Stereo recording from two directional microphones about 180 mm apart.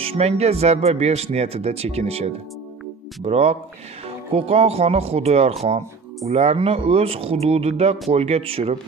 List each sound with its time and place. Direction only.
0.0 s speech: 35° right (ahead or behind)